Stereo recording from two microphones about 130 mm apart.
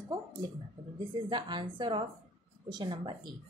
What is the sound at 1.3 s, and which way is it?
A woman's voice, 35° right (ahead or behind).